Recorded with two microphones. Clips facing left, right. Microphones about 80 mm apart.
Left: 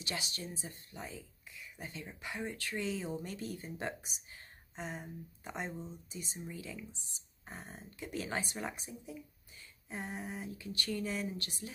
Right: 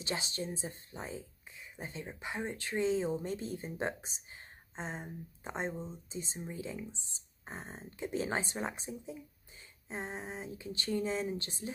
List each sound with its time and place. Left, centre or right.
0.0 s speech: right